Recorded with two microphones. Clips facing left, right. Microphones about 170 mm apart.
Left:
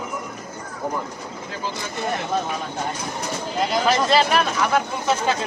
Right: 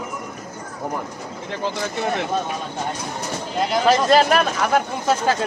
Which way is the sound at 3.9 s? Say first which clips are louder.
Right 4 dB; 45° right (ahead or behind).